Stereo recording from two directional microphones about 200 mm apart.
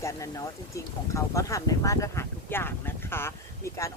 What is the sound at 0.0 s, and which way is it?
Speech, 15° left (ahead or behind).